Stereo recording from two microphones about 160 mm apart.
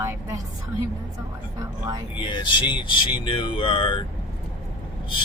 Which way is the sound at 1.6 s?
25° right (ahead or behind).